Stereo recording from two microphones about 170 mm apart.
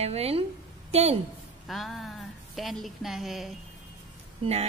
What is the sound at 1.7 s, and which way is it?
Speech, centre (ahead or behind).